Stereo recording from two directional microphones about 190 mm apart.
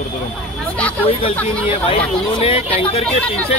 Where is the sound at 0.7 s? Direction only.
10° left (ahead or behind).